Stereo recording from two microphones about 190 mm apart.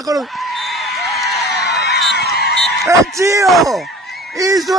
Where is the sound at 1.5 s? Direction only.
65° left (ahead or behind).